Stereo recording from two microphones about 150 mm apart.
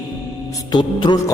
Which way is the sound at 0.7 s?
30° left (ahead or behind).